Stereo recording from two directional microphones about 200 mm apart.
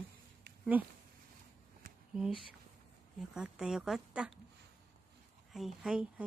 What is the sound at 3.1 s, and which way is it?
Speech, 5° right (ahead or behind).